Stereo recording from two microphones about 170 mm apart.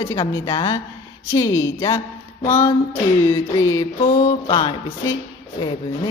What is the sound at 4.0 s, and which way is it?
Mantra, 45° left (ahead or behind).